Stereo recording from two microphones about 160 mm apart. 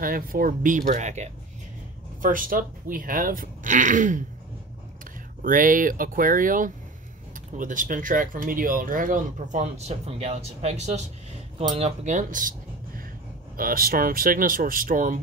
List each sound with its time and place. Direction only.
0.0 s speech: 65° right (ahead or behind); by 1.3 s 45° right (ahead or behind)
2.2 s speech: 60° right (ahead or behind)
5.4 s speech: 60° right (ahead or behind)